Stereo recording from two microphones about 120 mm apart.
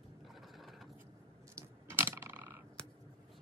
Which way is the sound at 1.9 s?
20° right (ahead or behind).